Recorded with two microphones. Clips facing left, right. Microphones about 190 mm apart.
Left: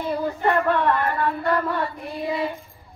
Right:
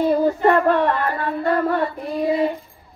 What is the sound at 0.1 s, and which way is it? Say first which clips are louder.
Music: right 6 dB; 45° right (ahead or behind).